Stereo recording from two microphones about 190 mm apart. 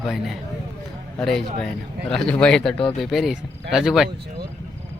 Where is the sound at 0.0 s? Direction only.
Centre (ahead or behind).